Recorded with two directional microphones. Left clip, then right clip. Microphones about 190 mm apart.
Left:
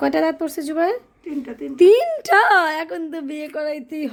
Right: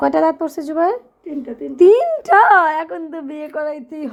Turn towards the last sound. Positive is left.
turn(degrees=5)  # may be behind; listen again after turning